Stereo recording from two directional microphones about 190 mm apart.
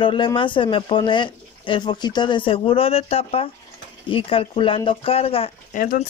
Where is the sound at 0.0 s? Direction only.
25° left (ahead or behind).